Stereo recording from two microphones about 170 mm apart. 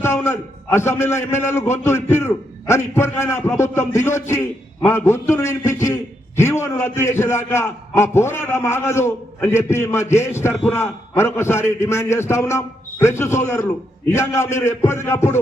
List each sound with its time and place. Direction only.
0.0 s a man's voice: 15° left (ahead or behind)